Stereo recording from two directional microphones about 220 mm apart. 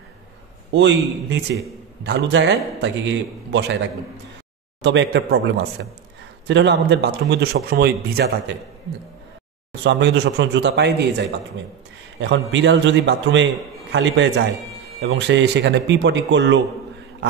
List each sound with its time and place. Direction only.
0.7 s speech: 55° right (ahead or behind)
4.8 s speech: 50° right (ahead or behind)
9.8 s a man's voice: 50° right (ahead or behind)